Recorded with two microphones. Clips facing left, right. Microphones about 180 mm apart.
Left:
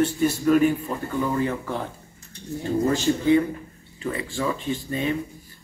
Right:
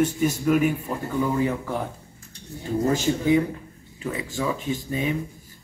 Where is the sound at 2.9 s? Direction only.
15° right (ahead or behind).